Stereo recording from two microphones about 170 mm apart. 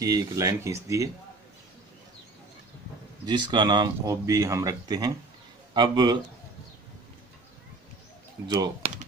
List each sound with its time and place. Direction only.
0.0 s speech: 20° right (ahead or behind)
3.3 s speech: 25° right (ahead or behind)
8.5 s speech: 25° right (ahead or behind)